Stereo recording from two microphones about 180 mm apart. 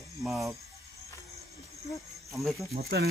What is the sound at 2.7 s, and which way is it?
Speech, 65° right (ahead or behind).